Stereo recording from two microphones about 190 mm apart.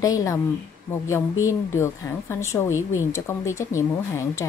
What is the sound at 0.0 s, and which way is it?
Speech, 15° left (ahead or behind).